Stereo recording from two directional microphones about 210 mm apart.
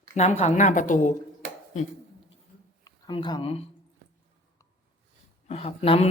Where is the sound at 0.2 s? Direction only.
35° left (ahead or behind).